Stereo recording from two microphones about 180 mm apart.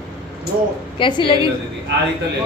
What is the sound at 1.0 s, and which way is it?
Speech, 25° left (ahead or behind).